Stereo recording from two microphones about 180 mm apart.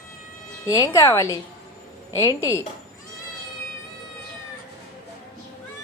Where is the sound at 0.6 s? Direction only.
20° left (ahead or behind).